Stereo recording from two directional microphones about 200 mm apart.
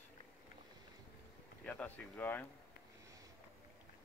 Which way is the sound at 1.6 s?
5° left (ahead or behind).